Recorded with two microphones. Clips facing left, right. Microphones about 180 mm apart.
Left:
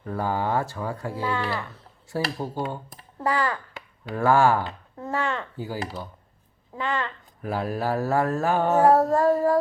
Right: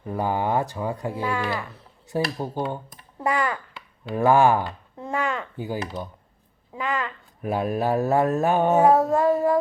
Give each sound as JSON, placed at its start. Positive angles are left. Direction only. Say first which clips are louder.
{"t": 0.0, "sound": "speech", "louder": "right 2 dB", "side_deg": -15}
{"t": 6.8, "sound": "a woman's voice", "louder": "even", "side_deg": 30}
{"t": 7.4, "sound": "mantra", "louder": "right 3 dB", "side_deg": -20}
{"t": 9.0, "sound": "female singing", "louder": "even", "side_deg": -5}